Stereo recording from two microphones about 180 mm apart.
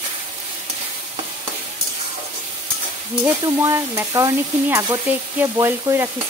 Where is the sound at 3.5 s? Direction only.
20° right (ahead or behind).